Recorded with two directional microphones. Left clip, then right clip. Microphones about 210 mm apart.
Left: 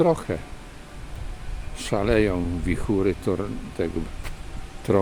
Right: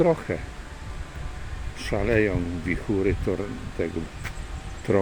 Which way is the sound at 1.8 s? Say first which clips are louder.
Left 2 dB; 15° left (ahead or behind).